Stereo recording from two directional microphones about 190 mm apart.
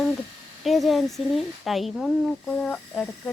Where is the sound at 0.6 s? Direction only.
Centre (ahead or behind).